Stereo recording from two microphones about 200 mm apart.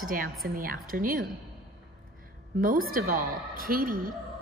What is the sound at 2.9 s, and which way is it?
A woman's voice, 45° right (ahead or behind).